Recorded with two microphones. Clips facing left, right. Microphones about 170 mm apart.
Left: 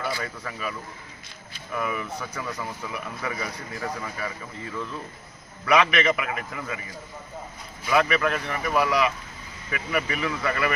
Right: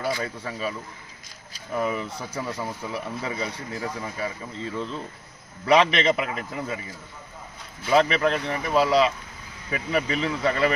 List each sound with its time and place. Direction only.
0.2 s speech: 25° right (ahead or behind)
7.9 s speech: 30° right (ahead or behind)